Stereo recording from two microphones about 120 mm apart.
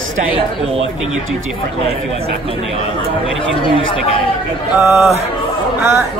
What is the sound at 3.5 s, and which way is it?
Speech, 45° left (ahead or behind).